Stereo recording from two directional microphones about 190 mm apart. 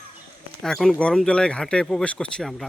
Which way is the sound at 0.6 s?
Centre (ahead or behind).